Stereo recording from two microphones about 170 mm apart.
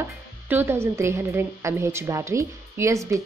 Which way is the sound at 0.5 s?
15° right (ahead or behind).